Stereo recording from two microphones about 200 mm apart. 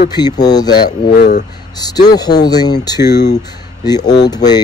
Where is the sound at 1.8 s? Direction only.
20° left (ahead or behind).